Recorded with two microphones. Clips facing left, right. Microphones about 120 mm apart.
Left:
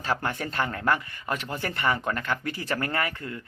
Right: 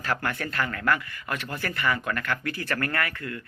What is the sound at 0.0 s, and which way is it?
Speech, 20° left (ahead or behind).